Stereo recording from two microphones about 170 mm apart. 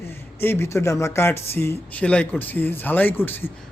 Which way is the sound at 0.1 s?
15° left (ahead or behind).